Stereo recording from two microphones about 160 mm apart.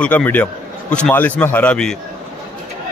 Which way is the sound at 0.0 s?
10° left (ahead or behind).